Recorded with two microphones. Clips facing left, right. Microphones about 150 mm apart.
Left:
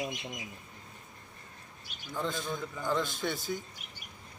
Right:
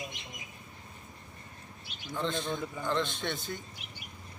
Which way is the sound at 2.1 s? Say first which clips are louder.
Right 2 dB; 5° left (ahead or behind).